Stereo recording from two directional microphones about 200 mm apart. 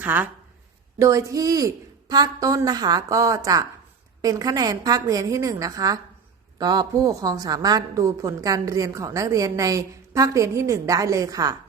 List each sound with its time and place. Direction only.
0.0 s a woman's voice: 10° right (ahead or behind)